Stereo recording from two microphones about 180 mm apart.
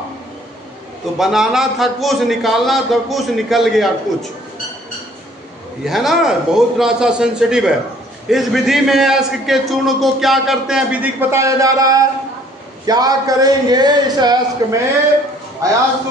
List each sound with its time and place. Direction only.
1.1 s a man's voice: centre (ahead or behind)
5.9 s a man's voice: centre (ahead or behind); by 14.8 s 20° right (ahead or behind)